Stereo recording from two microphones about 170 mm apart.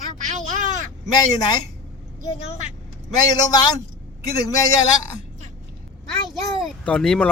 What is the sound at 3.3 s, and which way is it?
Speech, 25° left (ahead or behind).